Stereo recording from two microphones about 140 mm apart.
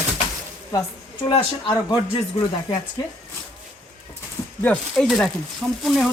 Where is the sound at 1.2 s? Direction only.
30° left (ahead or behind).